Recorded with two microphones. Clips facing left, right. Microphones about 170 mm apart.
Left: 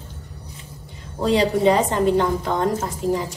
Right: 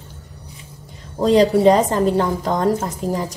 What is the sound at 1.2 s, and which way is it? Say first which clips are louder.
A woman's voice: right 5 dB; 40° right (ahead or behind).